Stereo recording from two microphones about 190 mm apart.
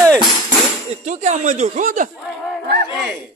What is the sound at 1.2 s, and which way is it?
Speech, 40° right (ahead or behind).